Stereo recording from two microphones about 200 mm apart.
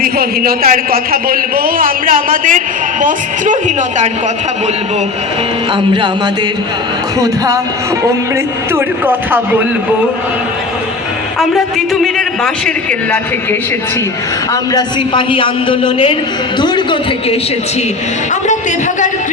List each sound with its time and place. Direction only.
0.0 s a man's voice: 50° right (ahead or behind)
7.2 s speech: 15° right (ahead or behind)
8.7 s speech: 10° right (ahead or behind)
12.6 s speech: 5° left (ahead or behind)
14.5 s a man's voice: 20° left (ahead or behind)